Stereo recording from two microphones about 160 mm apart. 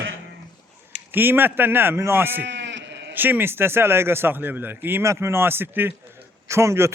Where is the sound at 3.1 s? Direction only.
10° right (ahead or behind).